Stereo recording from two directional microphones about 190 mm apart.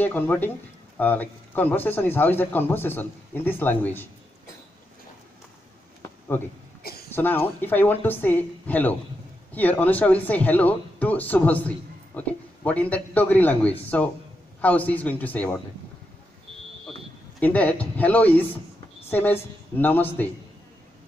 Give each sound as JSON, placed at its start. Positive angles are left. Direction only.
{"t": 0.0, "sound": "speech", "side_deg": 10}
{"t": 6.8, "sound": "a sound", "side_deg": 55}
{"t": 7.2, "sound": "speech", "side_deg": 10}
{"t": 17.4, "sound": "a woman's voice", "side_deg": 10}